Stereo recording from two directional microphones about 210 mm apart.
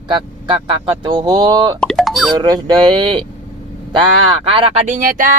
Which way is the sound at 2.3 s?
20° right (ahead or behind).